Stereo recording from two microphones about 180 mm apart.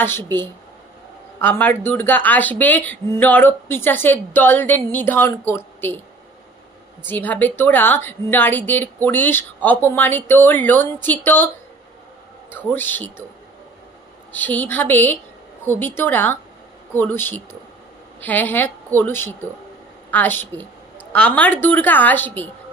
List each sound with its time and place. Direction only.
1.4 s a woman's voice: 10° left (ahead or behind)
7.1 s a woman's voice: 10° left (ahead or behind)
14.3 s a woman's voice: 10° left (ahead or behind)